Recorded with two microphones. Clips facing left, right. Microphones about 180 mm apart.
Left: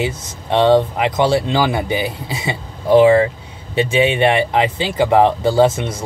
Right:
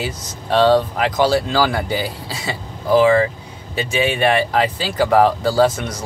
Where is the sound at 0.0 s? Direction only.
25° left (ahead or behind).